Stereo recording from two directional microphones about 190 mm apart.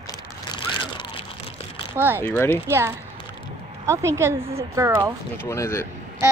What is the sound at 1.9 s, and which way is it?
Speech, 10° right (ahead or behind).